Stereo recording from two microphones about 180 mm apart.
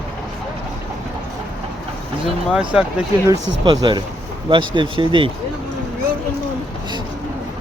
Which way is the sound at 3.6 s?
25° right (ahead or behind).